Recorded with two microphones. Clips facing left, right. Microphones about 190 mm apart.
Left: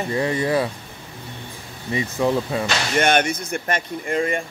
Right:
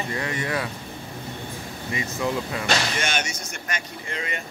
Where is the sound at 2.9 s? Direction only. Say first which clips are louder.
Left 9 dB; 55° left (ahead or behind).